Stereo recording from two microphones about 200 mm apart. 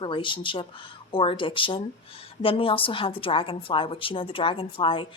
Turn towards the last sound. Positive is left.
turn(degrees=25)  # may be behind; listen again after turning